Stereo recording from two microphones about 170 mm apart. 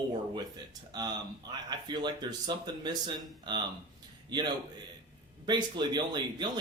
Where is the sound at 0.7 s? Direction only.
25° right (ahead or behind).